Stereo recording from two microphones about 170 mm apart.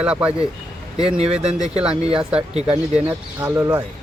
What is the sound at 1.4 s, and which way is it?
Speech, 40° right (ahead or behind).